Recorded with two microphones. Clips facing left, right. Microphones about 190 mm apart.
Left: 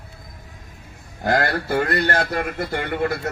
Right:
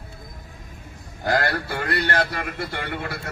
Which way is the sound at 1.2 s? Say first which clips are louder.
Left 2 dB; 45° left (ahead or behind).